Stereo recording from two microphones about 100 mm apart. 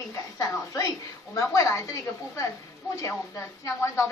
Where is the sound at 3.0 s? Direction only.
30° left (ahead or behind).